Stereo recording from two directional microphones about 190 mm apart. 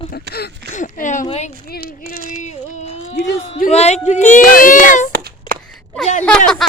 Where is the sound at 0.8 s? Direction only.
40° left (ahead or behind).